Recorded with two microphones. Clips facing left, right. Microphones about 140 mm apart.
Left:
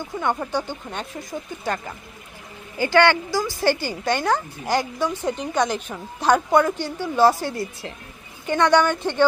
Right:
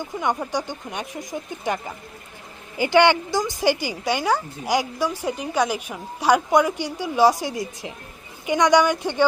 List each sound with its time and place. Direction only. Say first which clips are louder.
0.0 s a woman's voice: even; 15° right (ahead or behind)